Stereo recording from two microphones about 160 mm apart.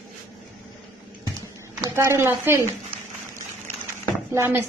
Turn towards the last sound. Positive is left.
turn(degrees=-15)  # may be behind; listen again after turning